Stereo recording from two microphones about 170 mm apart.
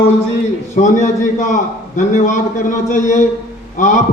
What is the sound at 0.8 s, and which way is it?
A man's voice, 45° left (ahead or behind).